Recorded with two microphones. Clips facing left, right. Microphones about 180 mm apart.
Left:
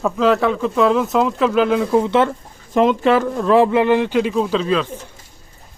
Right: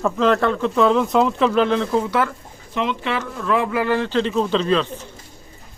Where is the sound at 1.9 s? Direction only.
25° left (ahead or behind).